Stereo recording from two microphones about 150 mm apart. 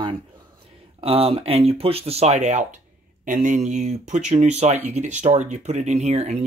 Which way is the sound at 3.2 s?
60° right (ahead or behind).